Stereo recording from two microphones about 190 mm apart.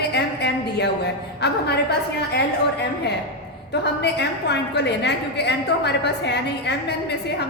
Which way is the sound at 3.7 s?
60° left (ahead or behind).